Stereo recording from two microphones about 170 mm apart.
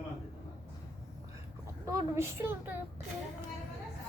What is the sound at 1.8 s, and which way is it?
Speech, 15° right (ahead or behind).